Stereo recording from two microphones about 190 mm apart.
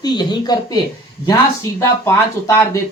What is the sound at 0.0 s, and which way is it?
Speech, 25° left (ahead or behind).